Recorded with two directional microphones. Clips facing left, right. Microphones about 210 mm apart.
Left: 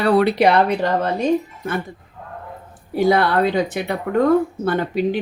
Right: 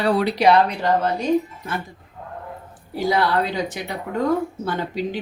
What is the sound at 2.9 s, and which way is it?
A woman's voice, 55° left (ahead or behind).